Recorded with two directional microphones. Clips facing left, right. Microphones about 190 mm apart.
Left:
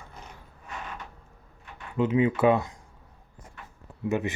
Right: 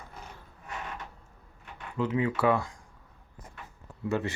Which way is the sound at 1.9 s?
20° left (ahead or behind).